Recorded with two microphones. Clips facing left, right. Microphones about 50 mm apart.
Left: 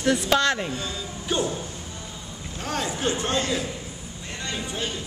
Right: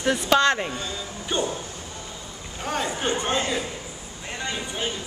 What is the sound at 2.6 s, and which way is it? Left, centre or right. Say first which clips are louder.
A woman's voice: right 1 dB; centre.